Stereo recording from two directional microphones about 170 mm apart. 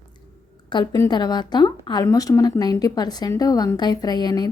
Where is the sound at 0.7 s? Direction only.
25° left (ahead or behind).